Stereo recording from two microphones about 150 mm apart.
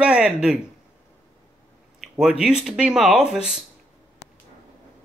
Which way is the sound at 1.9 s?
5° right (ahead or behind).